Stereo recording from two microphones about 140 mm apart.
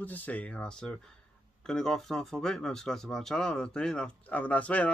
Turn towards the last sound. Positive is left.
turn(degrees=10)  # may be behind; listen again after turning